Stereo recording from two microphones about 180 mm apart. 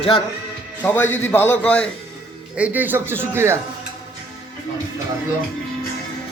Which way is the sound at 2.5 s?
10° right (ahead or behind).